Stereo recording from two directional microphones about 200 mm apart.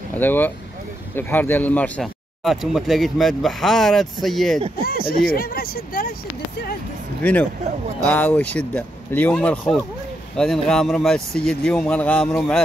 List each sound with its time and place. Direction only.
0.1 s speech: 10° left (ahead or behind)
5.3 s speech: 50° left (ahead or behind)
7.2 s speech: 10° left (ahead or behind)